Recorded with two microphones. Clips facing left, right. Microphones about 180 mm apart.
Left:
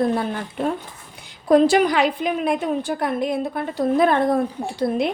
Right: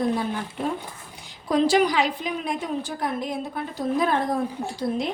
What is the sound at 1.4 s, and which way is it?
A woman's voice, 55° left (ahead or behind).